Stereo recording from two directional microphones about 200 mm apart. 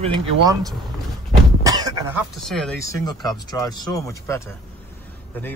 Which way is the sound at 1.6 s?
20° right (ahead or behind).